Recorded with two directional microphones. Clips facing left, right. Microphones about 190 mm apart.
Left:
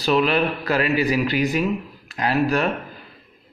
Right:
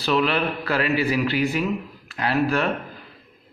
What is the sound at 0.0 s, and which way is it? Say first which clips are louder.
Speech: left 3 dB; 15° left (ahead or behind).